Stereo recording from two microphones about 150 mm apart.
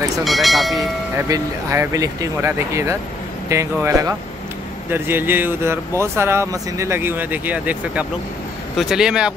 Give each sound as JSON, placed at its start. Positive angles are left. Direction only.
{"t": 0.2, "sound": "speech", "side_deg": 0}
{"t": 0.7, "sound": "speech", "side_deg": -20}